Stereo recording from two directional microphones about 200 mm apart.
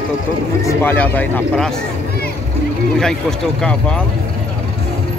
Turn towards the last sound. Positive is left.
turn(degrees=5)  # may be behind; listen again after turning